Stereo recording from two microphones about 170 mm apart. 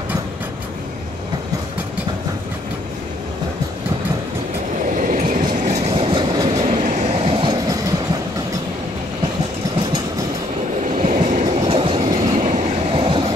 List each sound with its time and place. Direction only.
4.9 s train: 50° right (ahead or behind); by 6.5 s 25° right (ahead or behind)
6.8 s train: 45° right (ahead or behind); by 7.9 s 20° right (ahead or behind)
10.8 s train: 50° right (ahead or behind); by 12.2 s 30° right (ahead or behind)
12.4 s train: 45° right (ahead or behind)
12.9 s vehicle: 30° right (ahead or behind)